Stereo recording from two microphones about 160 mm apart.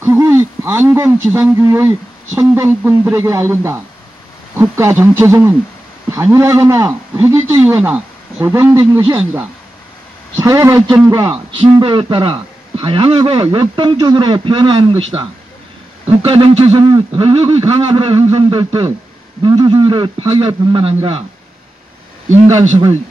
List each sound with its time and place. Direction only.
0.0 s a man's voice: 15° right (ahead or behind); by 15.2 s 35° right (ahead or behind)
16.3 s a man's voice: 35° right (ahead or behind)
16.8 s speech: 25° right (ahead or behind)
17.2 s a man's voice: 35° right (ahead or behind)
22.3 s a man's voice: 35° right (ahead or behind)